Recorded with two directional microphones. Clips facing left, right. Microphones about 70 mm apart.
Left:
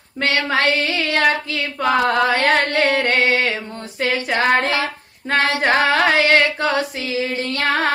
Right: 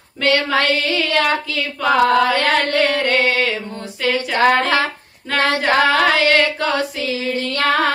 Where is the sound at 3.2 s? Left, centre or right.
Left.